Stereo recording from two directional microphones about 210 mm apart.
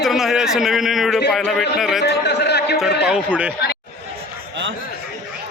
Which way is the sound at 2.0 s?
55° left (ahead or behind).